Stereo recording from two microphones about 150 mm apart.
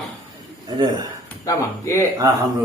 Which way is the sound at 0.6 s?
25° right (ahead or behind).